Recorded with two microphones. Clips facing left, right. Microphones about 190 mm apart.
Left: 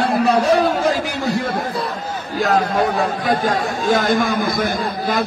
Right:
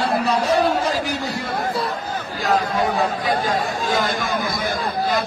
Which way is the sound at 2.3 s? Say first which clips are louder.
Left 4 dB; 50° left (ahead or behind).